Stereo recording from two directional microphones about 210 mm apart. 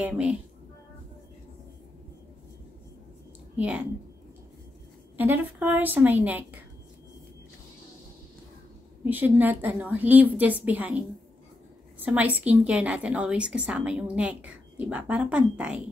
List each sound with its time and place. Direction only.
0.0 s a woman's voice: 5° right (ahead or behind)
3.5 s a woman's voice: 5° right (ahead or behind)
5.1 s a woman's voice: 10° right (ahead or behind)
9.0 s a woman's voice: 10° right (ahead or behind)